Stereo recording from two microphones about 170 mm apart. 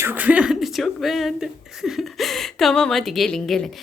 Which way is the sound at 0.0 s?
10° right (ahead or behind).